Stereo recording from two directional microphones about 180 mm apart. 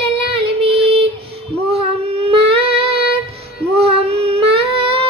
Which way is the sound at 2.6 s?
30° right (ahead or behind).